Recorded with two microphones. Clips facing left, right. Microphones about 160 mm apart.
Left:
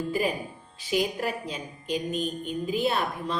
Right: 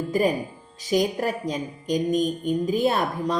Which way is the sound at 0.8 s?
45° right (ahead or behind).